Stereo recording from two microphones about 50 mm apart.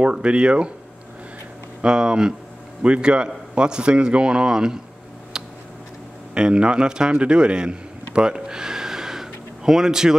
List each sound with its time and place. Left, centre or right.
0.0 s speech: right
1.9 s a man's voice: centre
5.3 s a sound: centre
6.3 s a man's voice: centre